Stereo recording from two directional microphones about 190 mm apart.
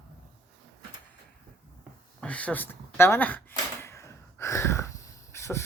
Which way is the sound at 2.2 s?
5° left (ahead or behind).